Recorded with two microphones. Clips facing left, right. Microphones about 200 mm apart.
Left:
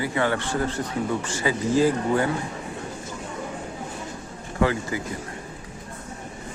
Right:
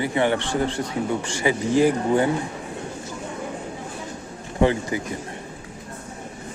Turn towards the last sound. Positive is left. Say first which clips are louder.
# right 3 dB
turn(degrees=-20)  # may be behind; listen again after turning